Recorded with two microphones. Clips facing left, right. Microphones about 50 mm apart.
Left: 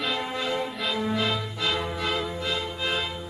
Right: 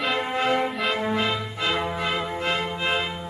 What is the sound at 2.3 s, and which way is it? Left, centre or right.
Music, right.